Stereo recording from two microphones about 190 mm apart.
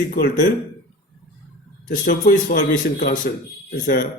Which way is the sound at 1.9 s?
45° left (ahead or behind).